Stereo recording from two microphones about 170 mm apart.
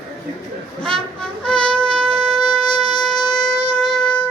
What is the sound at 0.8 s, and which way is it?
Brass instrument, 5° left (ahead or behind).